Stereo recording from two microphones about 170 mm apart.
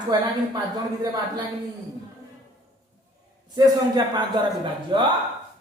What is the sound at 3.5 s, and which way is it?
Speech, 25° right (ahead or behind).